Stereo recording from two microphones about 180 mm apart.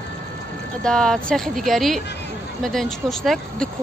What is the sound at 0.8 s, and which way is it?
Speech, 5° left (ahead or behind).